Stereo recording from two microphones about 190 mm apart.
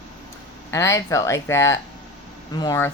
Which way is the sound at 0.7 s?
15° left (ahead or behind).